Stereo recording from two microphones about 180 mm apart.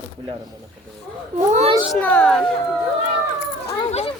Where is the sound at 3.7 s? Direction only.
35° left (ahead or behind).